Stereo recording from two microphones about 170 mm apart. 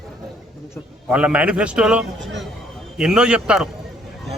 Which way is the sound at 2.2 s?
90° right.